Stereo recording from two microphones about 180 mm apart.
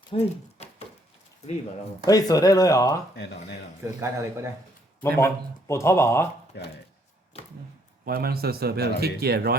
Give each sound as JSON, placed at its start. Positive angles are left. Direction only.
{"t": 0.1, "sound": "a sound", "side_deg": 35}
{"t": 2.0, "sound": "speech", "side_deg": 20}
{"t": 4.0, "sound": "speech", "side_deg": -15}
{"t": 5.0, "sound": "speech", "side_deg": 15}
{"t": 6.5, "sound": "speech", "side_deg": 65}
{"t": 8.0, "sound": "a man's voice", "side_deg": -55}